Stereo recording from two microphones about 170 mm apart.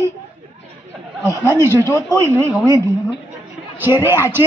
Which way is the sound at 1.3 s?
15° right (ahead or behind).